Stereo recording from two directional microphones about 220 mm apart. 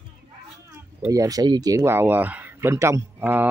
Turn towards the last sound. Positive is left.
turn(degrees=-10)  # may be behind; listen again after turning